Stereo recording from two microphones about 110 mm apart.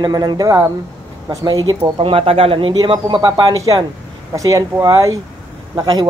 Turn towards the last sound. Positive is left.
turn(degrees=-35)  # may be behind; listen again after turning